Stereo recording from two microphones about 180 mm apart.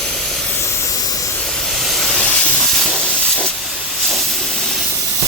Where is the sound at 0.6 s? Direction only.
15° left (ahead or behind).